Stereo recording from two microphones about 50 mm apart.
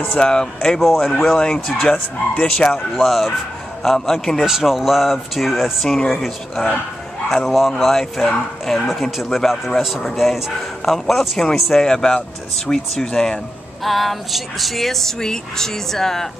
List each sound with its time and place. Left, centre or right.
0.2 s speech: centre
0.7 s speech: centre
1.1 s speech: centre
3.0 s speech: centre
4.5 s speech: centre
5.9 s speech: centre
13.8 s speech: centre